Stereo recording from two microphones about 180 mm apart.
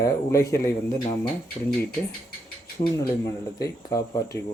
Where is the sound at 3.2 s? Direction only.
20° left (ahead or behind).